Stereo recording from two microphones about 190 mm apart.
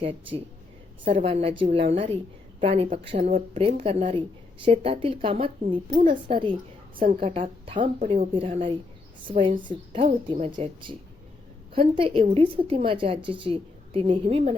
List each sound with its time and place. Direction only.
0.0 s a woman's voice: 30° right (ahead or behind)